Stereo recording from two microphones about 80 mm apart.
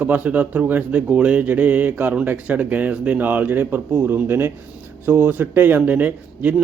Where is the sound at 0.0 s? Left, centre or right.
Right.